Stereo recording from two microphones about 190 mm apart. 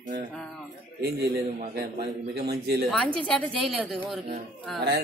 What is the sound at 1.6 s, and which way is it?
A man's voice, 50° right (ahead or behind).